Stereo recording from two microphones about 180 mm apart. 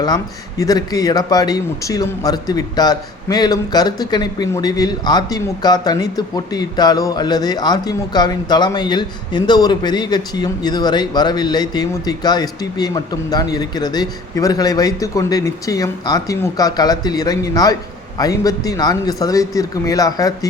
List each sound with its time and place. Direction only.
0.6 s a man's voice: 20° left (ahead or behind)